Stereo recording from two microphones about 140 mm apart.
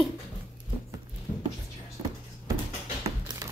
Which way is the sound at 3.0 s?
25° right (ahead or behind).